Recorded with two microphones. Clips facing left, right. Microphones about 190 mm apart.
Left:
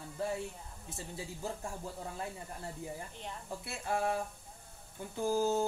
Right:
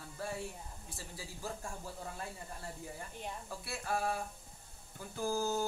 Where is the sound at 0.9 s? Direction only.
20° left (ahead or behind).